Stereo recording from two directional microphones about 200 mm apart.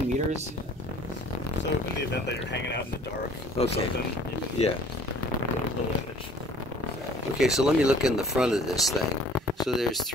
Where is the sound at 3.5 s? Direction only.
30° left (ahead or behind).